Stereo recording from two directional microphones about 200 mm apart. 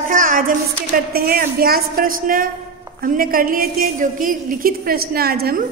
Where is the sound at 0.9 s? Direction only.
50° right (ahead or behind).